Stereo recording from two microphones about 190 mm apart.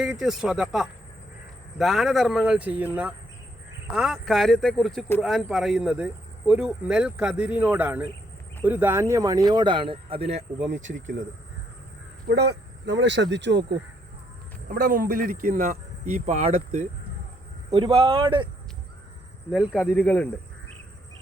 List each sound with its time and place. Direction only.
0.0 s speech: 5° right (ahead or behind); by 10.4 s 30° right (ahead or behind)
10.7 s speech: 85° right
12.3 s speech: 65° right (ahead or behind)
14.7 s speech: 50° right (ahead or behind)
15.7 s speech: 35° right (ahead or behind)
19.5 s speech: centre (ahead or behind)